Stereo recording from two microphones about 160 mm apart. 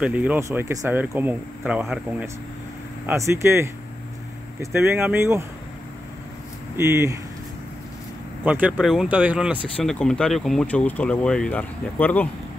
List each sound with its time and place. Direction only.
0.0 s speech: 10° right (ahead or behind)
3.1 s speech: 15° right (ahead or behind)
6.8 s speech: 15° right (ahead or behind)
8.5 s speech: 10° right (ahead or behind)
9.8 s speech: 5° left (ahead or behind)